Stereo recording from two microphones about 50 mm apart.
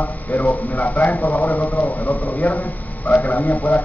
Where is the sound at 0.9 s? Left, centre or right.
Left.